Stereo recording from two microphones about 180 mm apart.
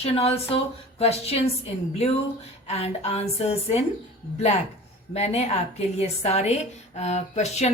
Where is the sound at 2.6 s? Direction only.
35° left (ahead or behind).